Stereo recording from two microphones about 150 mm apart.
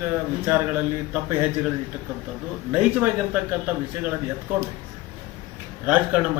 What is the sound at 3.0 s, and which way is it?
A man's voice, 10° right (ahead or behind).